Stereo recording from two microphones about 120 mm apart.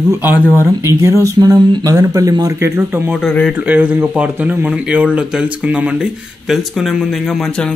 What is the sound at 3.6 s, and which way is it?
Speech, 10° right (ahead or behind).